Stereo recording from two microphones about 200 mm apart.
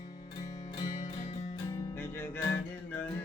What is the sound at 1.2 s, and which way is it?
Music, 25° left (ahead or behind).